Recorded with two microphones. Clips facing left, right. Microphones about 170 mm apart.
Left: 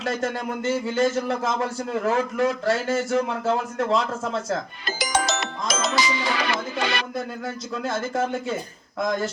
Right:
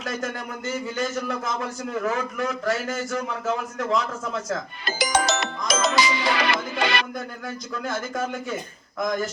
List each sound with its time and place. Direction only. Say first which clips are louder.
0.0 s speech: left 4 dB; 30° left (ahead or behind)
4.9 s music: right 2 dB; 65° right (ahead or behind)
7.4 s speech: left 2 dB; 30° left (ahead or behind)